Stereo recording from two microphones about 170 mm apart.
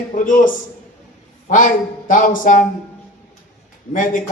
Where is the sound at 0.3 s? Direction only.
50° left (ahead or behind).